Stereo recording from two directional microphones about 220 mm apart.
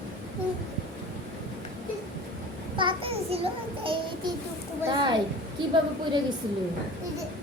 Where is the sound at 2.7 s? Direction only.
25° right (ahead or behind).